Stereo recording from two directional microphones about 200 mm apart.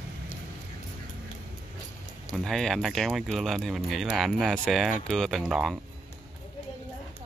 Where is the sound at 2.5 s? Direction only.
Centre (ahead or behind).